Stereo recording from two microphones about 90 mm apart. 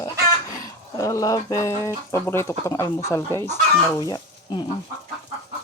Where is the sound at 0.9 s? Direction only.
40° left (ahead or behind).